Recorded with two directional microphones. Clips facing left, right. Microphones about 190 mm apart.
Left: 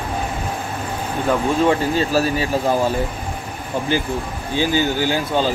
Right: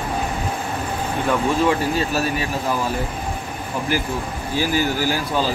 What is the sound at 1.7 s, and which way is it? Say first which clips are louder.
Speech: left 2 dB; 30° left (ahead or behind).